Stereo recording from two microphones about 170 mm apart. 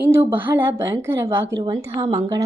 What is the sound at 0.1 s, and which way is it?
A woman's voice, 10° right (ahead or behind).